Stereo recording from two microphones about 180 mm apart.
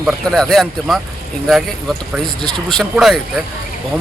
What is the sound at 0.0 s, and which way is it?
Speech, centre (ahead or behind).